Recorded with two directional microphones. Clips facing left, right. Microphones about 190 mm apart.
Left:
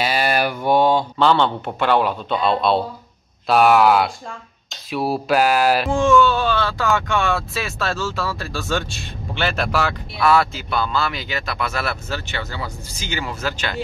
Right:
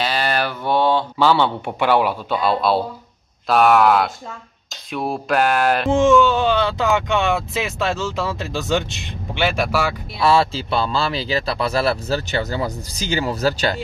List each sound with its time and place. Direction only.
0.0 s a sound: 10° left (ahead or behind)
1.1 s speech: 5° right (ahead or behind)
3.4 s music: centre (ahead or behind)
5.9 s speech: 20° right (ahead or behind)
10.1 s speech: 30° right (ahead or behind)